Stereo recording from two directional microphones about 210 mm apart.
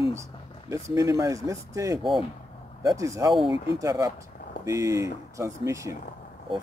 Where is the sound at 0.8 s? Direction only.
15° right (ahead or behind).